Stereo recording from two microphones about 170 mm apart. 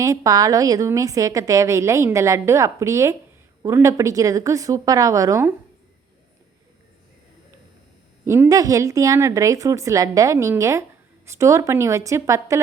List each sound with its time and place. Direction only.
0.0 s a woman's voice: 20° right (ahead or behind)
8.2 s a woman's voice: 15° right (ahead or behind)